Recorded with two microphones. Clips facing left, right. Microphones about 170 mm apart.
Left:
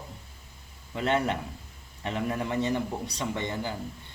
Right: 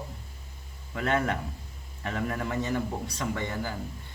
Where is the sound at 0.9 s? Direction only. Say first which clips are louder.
Left 1 dB; 20° left (ahead or behind).